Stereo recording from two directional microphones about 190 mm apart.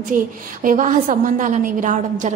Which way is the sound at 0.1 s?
45° right (ahead or behind).